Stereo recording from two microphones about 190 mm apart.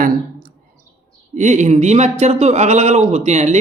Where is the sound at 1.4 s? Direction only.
40° right (ahead or behind).